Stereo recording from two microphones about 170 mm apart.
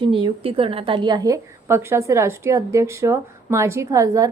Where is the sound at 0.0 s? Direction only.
30° right (ahead or behind).